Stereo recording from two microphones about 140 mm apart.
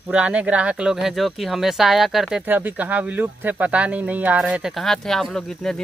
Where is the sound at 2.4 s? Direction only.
10° right (ahead or behind).